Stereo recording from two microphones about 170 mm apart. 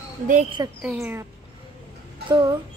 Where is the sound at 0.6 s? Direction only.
20° right (ahead or behind).